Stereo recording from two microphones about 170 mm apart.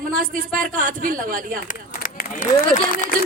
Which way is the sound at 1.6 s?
50° left (ahead or behind).